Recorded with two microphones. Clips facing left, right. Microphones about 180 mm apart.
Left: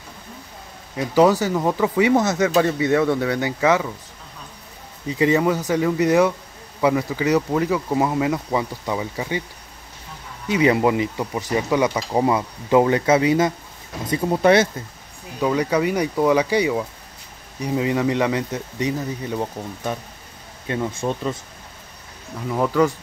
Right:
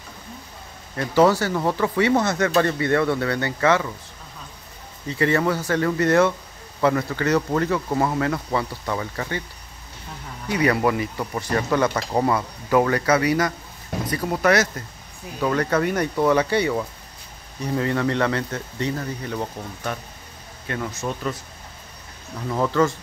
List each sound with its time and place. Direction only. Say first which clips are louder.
0.9 s speech: left 1 dB; 15° left (ahead or behind)
5.0 s speech: left 3 dB; 15° left (ahead or behind)
10.5 s speech: left 3 dB; 20° left (ahead or behind)
15.4 s speech: left 2 dB; 10° left (ahead or behind)
22.5 s speech: left 2 dB; 10° left (ahead or behind)